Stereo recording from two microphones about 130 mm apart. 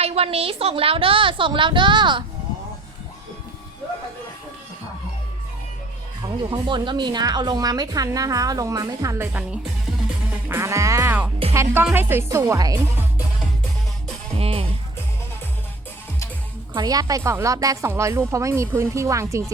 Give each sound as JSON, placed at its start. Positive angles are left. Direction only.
{"t": 0.0, "sound": "a woman's voice", "side_deg": -50}
{"t": 6.5, "sound": "a woman's voice", "side_deg": -40}
{"t": 10.5, "sound": "music", "side_deg": -20}
{"t": 11.5, "sound": "a woman's voice", "side_deg": -20}
{"t": 14.3, "sound": "speech", "side_deg": -50}
{"t": 16.7, "sound": "a woman's voice", "side_deg": -30}